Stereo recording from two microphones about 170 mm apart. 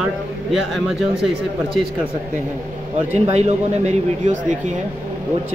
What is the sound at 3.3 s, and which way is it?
Speech, 40° right (ahead or behind).